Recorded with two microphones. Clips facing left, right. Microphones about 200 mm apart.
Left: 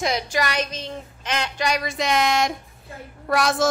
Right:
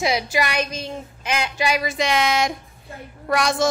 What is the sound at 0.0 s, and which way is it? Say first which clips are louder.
A woman's voice: right 2 dB; 10° right (ahead or behind).